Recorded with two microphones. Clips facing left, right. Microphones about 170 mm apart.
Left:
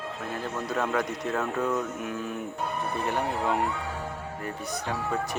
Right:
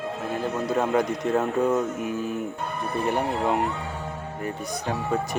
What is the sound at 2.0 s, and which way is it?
Speech, 10° right (ahead or behind).